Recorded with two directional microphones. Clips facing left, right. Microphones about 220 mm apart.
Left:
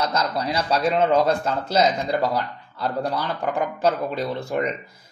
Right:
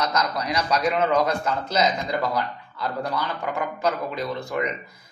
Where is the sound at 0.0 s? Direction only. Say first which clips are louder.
Left 1 dB; 30° left (ahead or behind).